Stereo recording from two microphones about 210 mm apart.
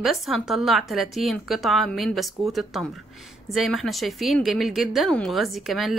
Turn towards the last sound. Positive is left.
turn(degrees=0)  # may be behind; listen again after turning